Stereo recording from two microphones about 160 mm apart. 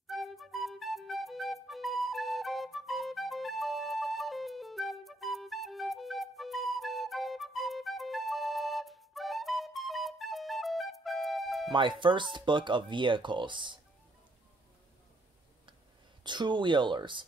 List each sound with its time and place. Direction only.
0.0 s music: centre (ahead or behind)
12.0 s speech: 30° right (ahead or behind)
16.3 s speech: 30° right (ahead or behind)